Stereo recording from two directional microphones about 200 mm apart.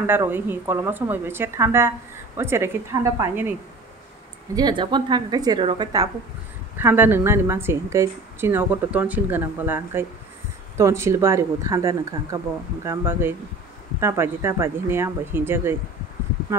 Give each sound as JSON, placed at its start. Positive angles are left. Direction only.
{"t": 0.0, "sound": "a woman's voice", "side_deg": -10}
{"t": 4.6, "sound": "a woman's voice", "side_deg": -20}
{"t": 6.8, "sound": "a woman's voice", "side_deg": -10}